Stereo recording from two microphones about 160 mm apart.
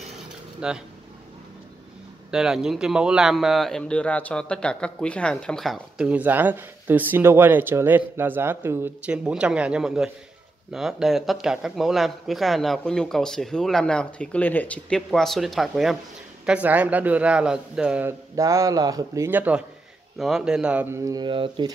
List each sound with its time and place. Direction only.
0.6 s speech: 5° right (ahead or behind)
2.3 s a man's voice: 5° right (ahead or behind)
18.3 s a man's voice: 20° right (ahead or behind)